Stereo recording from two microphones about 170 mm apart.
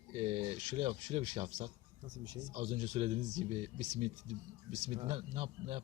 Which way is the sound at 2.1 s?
25° right (ahead or behind).